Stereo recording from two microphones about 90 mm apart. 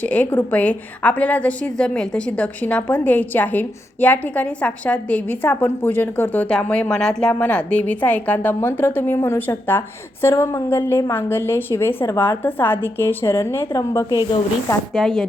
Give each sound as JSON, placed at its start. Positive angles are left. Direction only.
{"t": 0.0, "sound": "a woman's voice", "side_deg": 15}
{"t": 14.9, "sound": "speech", "side_deg": 0}